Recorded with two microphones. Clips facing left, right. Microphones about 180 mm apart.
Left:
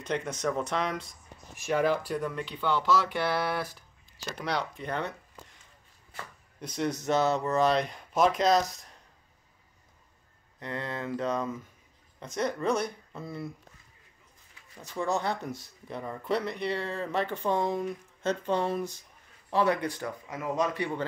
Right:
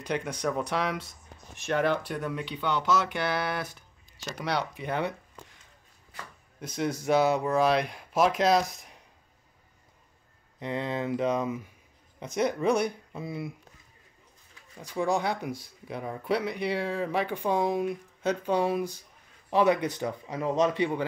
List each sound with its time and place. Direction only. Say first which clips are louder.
0.0 s speech: even; 10° right (ahead or behind)
1.7 s speech: even; 5° left (ahead or behind)
6.6 s speech: right 1 dB; 5° right (ahead or behind)
10.6 s speech: right 4 dB; 20° right (ahead or behind)
14.8 s speech: right 3 dB; 15° right (ahead or behind)